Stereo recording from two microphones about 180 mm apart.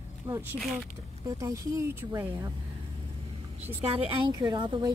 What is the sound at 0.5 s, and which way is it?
Speech, centre (ahead or behind).